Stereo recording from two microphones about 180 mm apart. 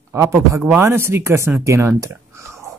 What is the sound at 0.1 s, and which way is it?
A man's voice, 15° right (ahead or behind).